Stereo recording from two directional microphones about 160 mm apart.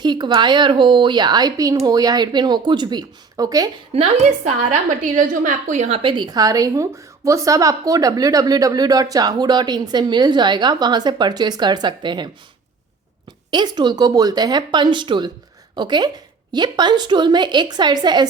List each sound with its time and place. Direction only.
0.0 s a woman's voice: 25° right (ahead or behind)
3.9 s a woman's voice: 35° right (ahead or behind)
4.7 s a woman's voice: 50° right (ahead or behind); by 12.3 s 30° right (ahead or behind)
13.5 s a woman's voice: 25° right (ahead or behind)